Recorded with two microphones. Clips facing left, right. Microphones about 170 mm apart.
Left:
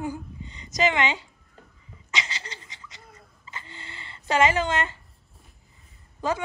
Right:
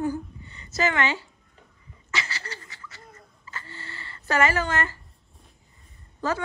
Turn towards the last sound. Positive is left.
turn(degrees=15)  # may be behind; listen again after turning